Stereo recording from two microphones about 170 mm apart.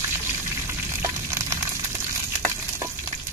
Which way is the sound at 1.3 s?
15° right (ahead or behind).